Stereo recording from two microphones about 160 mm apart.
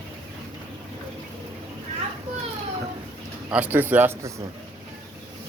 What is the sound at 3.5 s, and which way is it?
Speech, 10° right (ahead or behind).